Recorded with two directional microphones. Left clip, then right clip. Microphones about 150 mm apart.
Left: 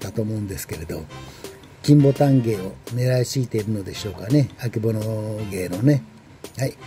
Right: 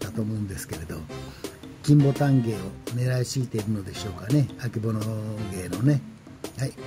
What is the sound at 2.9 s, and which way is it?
Speech, 20° left (ahead or behind).